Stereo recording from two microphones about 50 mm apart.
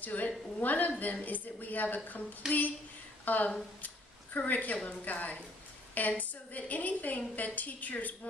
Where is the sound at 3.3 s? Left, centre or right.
Left.